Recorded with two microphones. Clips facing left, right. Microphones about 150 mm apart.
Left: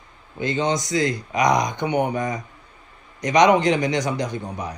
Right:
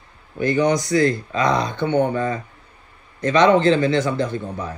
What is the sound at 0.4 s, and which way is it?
A man's voice, 20° left (ahead or behind).